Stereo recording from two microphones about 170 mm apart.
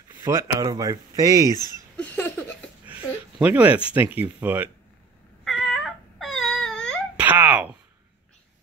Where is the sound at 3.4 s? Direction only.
10° right (ahead or behind).